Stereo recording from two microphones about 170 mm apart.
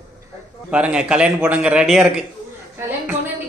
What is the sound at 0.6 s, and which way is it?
A woman's voice, 5° right (ahead or behind).